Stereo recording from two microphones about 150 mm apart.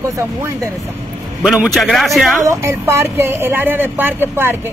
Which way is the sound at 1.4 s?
5° right (ahead or behind).